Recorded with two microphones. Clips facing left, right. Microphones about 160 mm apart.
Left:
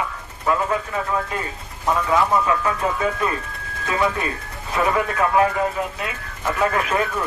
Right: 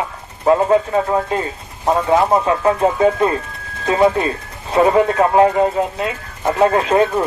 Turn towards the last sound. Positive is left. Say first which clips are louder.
# right 8 dB
turn(degrees=-30)  # may be behind; listen again after turning